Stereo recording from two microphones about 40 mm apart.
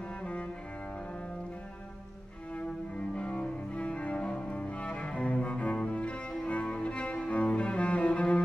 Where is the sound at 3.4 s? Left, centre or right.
Left.